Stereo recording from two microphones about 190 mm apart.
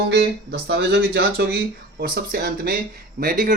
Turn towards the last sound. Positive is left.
turn(degrees=-45)  # may be behind; listen again after turning